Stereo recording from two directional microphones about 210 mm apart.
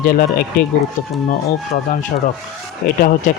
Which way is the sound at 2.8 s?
45° left (ahead or behind).